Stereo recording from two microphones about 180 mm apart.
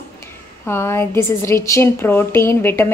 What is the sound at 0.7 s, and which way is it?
A woman's voice, 15° left (ahead or behind).